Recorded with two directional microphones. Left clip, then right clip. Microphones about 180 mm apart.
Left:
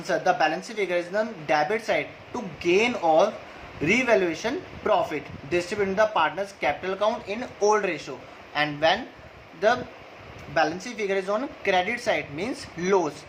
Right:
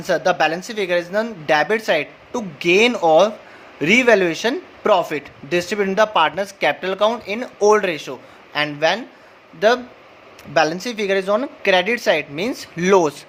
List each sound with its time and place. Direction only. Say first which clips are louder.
0.0 s speech: right 5 dB; 50° right (ahead or behind)